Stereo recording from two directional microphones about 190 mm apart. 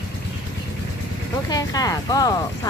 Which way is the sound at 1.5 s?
20° left (ahead or behind).